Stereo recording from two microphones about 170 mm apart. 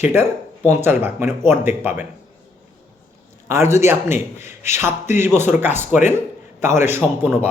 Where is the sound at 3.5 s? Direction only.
15° right (ahead or behind).